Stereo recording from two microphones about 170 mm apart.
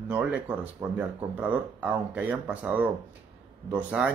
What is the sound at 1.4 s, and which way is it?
Speech, 10° right (ahead or behind).